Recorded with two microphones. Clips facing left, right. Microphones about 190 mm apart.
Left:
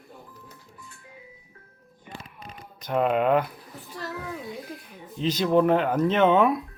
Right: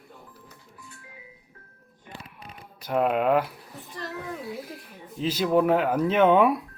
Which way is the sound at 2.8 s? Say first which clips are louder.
Left 1 dB; 5° right (ahead or behind).